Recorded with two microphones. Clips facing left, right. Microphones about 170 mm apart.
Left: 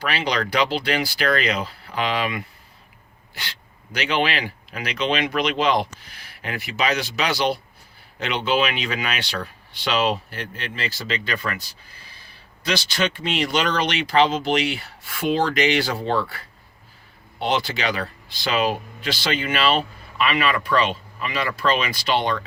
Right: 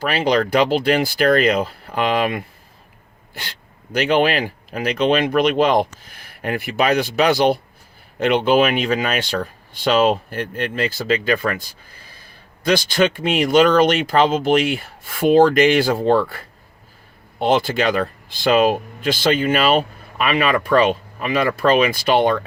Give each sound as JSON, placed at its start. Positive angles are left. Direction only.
{"t": 0.0, "sound": "speech", "side_deg": -45}
{"t": 3.9, "sound": "speech", "side_deg": -50}